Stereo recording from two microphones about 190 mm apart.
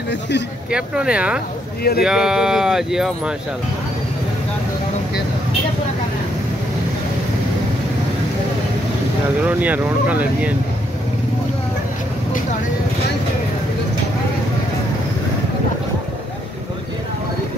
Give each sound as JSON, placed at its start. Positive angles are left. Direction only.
{"t": 0.7, "sound": "speech", "side_deg": -5}
{"t": 1.8, "sound": "speech", "side_deg": 55}
{"t": 2.0, "sound": "speech", "side_deg": -5}
{"t": 9.6, "sound": "speech", "side_deg": -10}